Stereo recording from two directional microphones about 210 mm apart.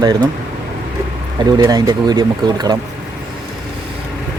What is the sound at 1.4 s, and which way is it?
Speech, 20° right (ahead or behind).